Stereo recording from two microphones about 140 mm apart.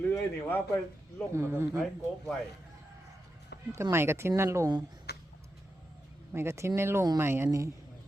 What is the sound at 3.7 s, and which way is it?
Speech, 20° right (ahead or behind).